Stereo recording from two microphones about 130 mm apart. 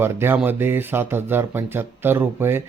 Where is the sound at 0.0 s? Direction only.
15° right (ahead or behind).